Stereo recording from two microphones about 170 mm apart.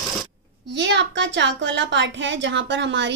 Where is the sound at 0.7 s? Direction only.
90° right.